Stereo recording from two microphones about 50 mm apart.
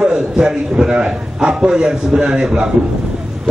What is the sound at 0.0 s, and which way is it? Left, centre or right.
A man's voice, centre.